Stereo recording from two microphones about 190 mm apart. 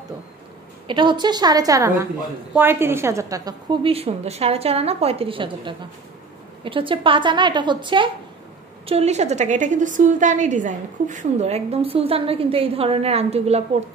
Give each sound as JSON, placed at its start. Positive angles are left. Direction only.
{"t": 0.8, "sound": "a woman's voice", "side_deg": -25}